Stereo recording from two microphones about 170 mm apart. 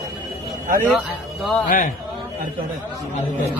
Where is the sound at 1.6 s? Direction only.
55° left (ahead or behind).